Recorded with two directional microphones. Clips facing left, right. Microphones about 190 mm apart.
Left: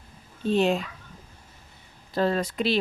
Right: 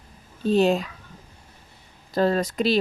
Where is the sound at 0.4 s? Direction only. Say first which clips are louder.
Right 3 dB; 40° right (ahead or behind).